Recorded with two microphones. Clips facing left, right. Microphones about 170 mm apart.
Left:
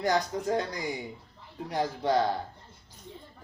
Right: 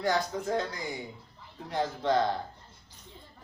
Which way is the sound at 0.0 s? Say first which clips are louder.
Left 2 dB; 15° left (ahead or behind).